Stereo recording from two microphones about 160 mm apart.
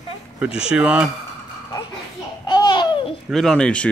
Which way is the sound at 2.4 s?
25° left (ahead or behind).